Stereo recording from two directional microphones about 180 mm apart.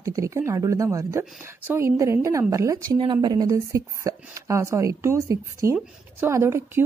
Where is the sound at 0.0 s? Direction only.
15° right (ahead or behind).